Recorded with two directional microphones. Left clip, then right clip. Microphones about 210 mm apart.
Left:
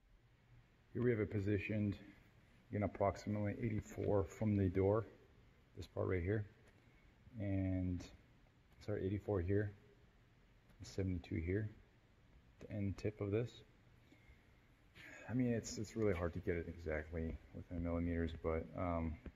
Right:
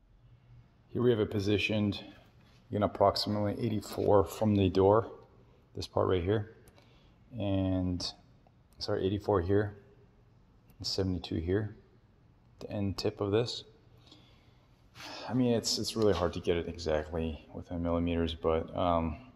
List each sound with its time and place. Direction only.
0.9 s speech: 5° right (ahead or behind)
10.9 s speech: 5° right (ahead or behind)
15.0 s speech: 5° right (ahead or behind)